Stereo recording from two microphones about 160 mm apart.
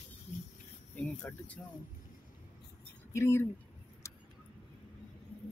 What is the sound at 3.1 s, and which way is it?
Speech, 15° left (ahead or behind).